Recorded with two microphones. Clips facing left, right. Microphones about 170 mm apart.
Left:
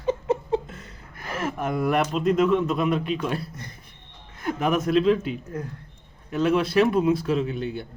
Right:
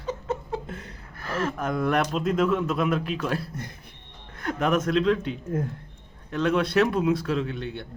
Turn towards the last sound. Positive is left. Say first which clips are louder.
# left 3 dB
turn(degrees=0)  # may be behind; listen again after turning